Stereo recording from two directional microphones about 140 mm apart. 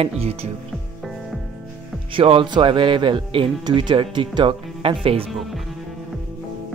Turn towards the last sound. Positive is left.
turn(degrees=0)  # may be behind; listen again after turning